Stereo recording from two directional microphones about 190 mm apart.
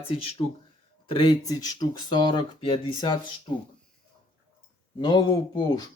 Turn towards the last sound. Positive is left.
turn(degrees=20)  # may be behind; listen again after turning